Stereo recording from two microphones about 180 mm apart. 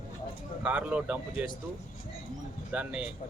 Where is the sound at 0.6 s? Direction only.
5° right (ahead or behind).